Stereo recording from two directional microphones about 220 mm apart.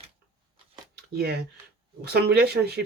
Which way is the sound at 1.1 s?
45° right (ahead or behind).